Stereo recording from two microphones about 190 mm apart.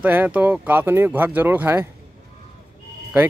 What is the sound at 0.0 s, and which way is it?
Speech, 10° right (ahead or behind).